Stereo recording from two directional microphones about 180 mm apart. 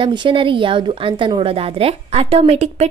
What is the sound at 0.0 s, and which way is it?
A woman's voice, 25° right (ahead or behind).